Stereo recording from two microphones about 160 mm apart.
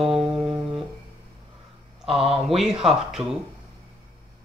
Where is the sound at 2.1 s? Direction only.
35° right (ahead or behind).